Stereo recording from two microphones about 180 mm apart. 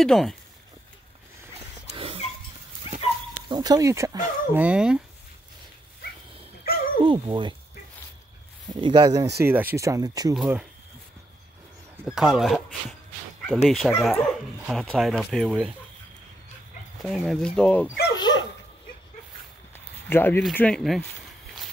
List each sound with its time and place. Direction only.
0.0 s speech: centre (ahead or behind)
1.9 s dog: 30° right (ahead or behind)
3.4 s speech: 20° right (ahead or behind); by 5.0 s 5° right (ahead or behind)
6.7 s dog: 55° left (ahead or behind)
7.1 s speech: 25° right (ahead or behind)
8.8 s speech: 25° right (ahead or behind)
10.3 s speech: 5° right (ahead or behind)
12.0 s speech: centre (ahead or behind)
13.7 s speech: centre (ahead or behind)
17.0 s speech: 5° left (ahead or behind)
18.1 s dog: 25° left (ahead or behind)
20.1 s speech: 10° left (ahead or behind)